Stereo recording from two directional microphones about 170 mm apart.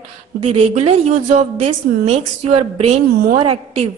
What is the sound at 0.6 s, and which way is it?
A woman's voice, 40° right (ahead or behind).